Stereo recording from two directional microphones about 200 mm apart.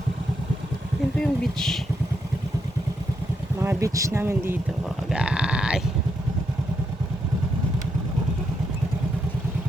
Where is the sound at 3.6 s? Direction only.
15° right (ahead or behind).